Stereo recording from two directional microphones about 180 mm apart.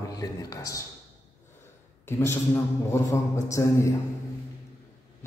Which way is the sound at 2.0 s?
15° left (ahead or behind).